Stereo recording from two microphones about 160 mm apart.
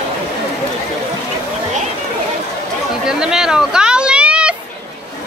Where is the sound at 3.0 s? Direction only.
5° right (ahead or behind).